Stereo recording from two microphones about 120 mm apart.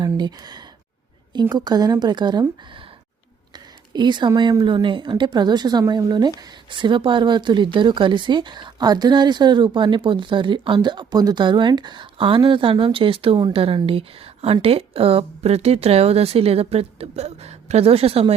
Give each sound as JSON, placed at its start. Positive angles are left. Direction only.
{"t": 0.0, "sound": "speech", "side_deg": -35}
{"t": 3.9, "sound": "speech", "side_deg": -40}